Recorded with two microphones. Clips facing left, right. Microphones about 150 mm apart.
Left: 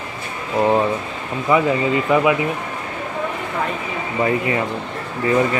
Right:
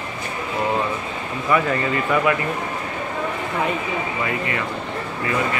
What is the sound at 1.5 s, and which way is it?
Speech, 15° left (ahead or behind).